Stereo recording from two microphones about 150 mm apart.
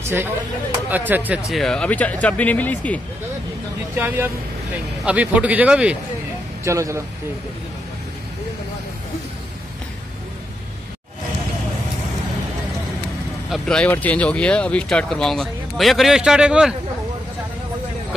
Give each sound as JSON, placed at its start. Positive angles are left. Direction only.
{"t": 0.0, "sound": "a man's voice", "side_deg": -15}
{"t": 1.5, "sound": "speech", "side_deg": 5}
{"t": 3.9, "sound": "a man's voice", "side_deg": -10}
{"t": 6.6, "sound": "speech", "side_deg": -20}
{"t": 13.5, "sound": "speech", "side_deg": 5}